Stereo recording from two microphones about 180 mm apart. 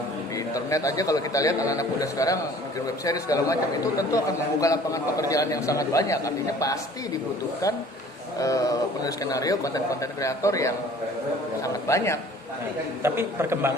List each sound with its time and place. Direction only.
0.3 s a man's voice: 20° left (ahead or behind)
8.4 s a man's voice: 20° left (ahead or behind)
13.0 s a man's voice: 15° right (ahead or behind)